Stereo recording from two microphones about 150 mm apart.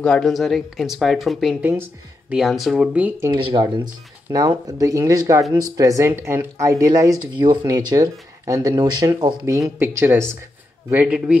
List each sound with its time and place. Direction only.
0.0 s speech: 5° left (ahead or behind)
1.6 s speech: 10° right (ahead or behind)
3.3 s speech: 35° right (ahead or behind); by 11.3 s 5° right (ahead or behind)